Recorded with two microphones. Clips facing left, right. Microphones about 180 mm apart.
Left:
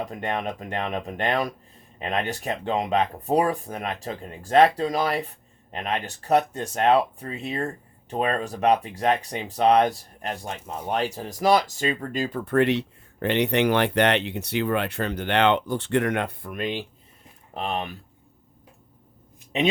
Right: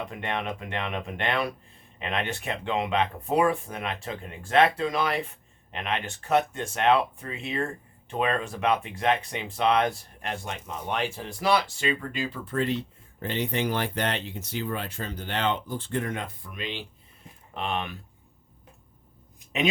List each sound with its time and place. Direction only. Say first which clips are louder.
0.0 s speech: left 3 dB; 40° left (ahead or behind)
17.5 s speech: left 2 dB; 35° left (ahead or behind)